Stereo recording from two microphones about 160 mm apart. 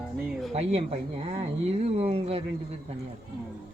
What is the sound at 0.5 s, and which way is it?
Speech, 40° right (ahead or behind).